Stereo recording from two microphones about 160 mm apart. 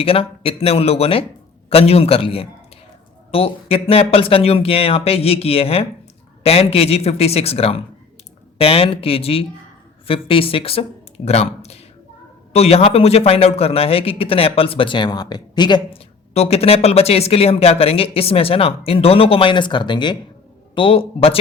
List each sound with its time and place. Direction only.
0.0 s a man's voice: 35° left (ahead or behind)